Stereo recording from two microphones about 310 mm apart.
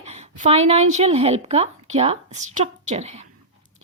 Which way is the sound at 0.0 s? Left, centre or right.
Right.